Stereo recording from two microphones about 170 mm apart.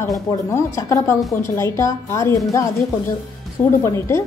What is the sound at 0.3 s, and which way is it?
Speech, 15° left (ahead or behind).